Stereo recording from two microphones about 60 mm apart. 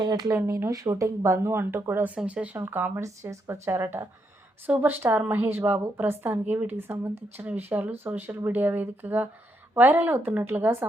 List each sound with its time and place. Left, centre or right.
0.7 s speech: right
2.0 s speech: right
2.6 s a woman's voice: right
2.9 s speech: right
4.6 s a woman's voice: right